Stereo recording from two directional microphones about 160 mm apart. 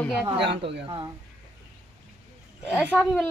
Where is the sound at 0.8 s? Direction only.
25° right (ahead or behind).